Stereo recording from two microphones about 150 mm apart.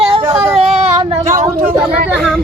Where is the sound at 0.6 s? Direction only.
40° right (ahead or behind).